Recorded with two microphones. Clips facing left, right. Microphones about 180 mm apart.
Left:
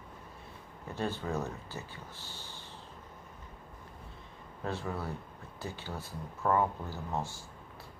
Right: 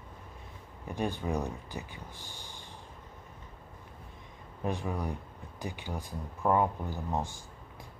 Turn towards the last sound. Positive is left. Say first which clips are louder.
# right 3 dB
turn(degrees=-15)  # may be behind; listen again after turning